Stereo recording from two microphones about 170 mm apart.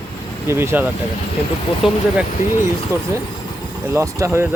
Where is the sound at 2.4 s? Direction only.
15° right (ahead or behind).